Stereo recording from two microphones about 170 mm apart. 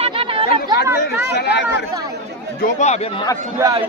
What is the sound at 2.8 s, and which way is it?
Speech, 40° left (ahead or behind).